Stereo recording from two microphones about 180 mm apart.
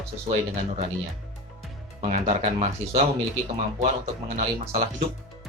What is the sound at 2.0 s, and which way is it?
Speech, 40° right (ahead or behind).